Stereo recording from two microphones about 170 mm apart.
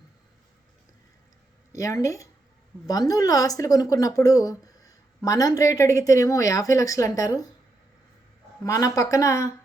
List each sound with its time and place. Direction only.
1.7 s speech: 20° left (ahead or behind)
8.6 s speech: 20° left (ahead or behind)